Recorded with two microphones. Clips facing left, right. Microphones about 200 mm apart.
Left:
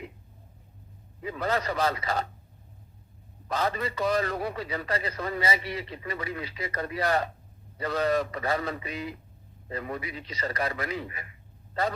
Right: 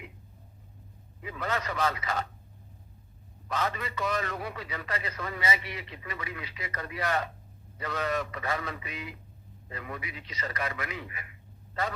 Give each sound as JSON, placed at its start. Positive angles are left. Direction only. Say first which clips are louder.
{"t": 1.2, "sound": "a man's voice", "louder": "left 4 dB", "side_deg": 35}
{"t": 3.5, "sound": "a man's voice", "louder": "left 3 dB", "side_deg": 35}